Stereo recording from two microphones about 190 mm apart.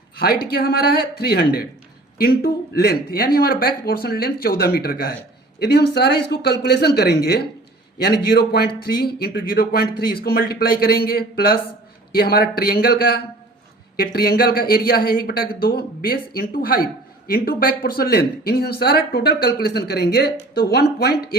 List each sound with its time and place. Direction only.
0.2 s speech: 55° left (ahead or behind)